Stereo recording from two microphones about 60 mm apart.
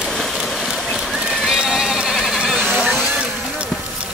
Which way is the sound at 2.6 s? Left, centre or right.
Right.